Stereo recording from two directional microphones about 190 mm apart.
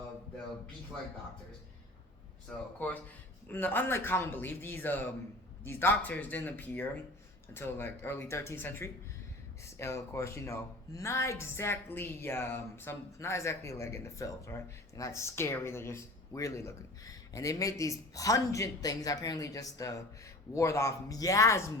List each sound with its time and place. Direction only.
2.7 s a woman's voice: 10° left (ahead or behind)